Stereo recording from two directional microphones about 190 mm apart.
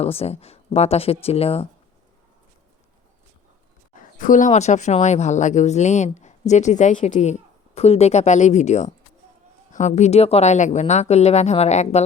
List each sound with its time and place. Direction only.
0.0 s speech: 30° left (ahead or behind)
4.2 s speech: 40° left (ahead or behind)